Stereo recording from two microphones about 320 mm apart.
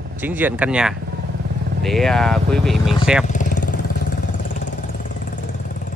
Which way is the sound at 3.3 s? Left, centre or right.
Left.